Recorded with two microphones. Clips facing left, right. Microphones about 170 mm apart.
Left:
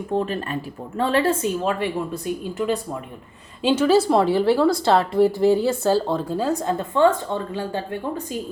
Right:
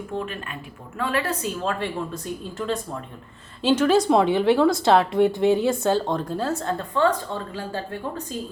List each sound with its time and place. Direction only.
0.1 s a woman's voice: 35° left (ahead or behind); by 7.9 s 20° left (ahead or behind)